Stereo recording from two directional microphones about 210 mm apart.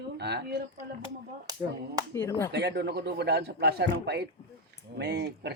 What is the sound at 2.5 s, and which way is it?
A man's voice, 50° right (ahead or behind).